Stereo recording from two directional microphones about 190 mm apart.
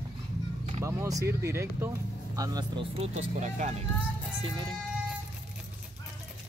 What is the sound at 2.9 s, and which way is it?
Speech, 35° right (ahead or behind).